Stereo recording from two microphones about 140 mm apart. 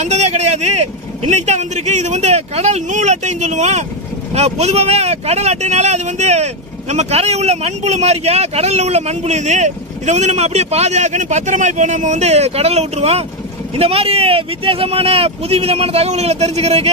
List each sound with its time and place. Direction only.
0.0 s speech: 55° right (ahead or behind)